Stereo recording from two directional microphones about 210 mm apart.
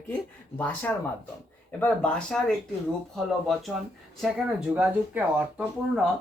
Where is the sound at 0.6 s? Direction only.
10° left (ahead or behind).